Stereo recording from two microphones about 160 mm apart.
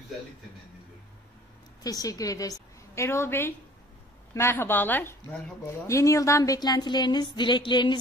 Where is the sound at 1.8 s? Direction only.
20° left (ahead or behind).